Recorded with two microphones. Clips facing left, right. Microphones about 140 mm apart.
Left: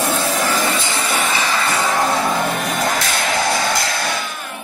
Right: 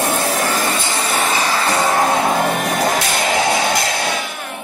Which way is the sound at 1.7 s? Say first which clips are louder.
Right 3 dB; 15° right (ahead or behind).